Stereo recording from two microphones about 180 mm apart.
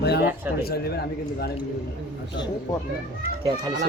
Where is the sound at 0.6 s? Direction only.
60° left (ahead or behind).